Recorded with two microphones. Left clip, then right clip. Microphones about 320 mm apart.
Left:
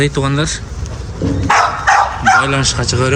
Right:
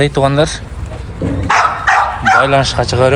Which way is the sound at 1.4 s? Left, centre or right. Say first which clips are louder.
Even; left.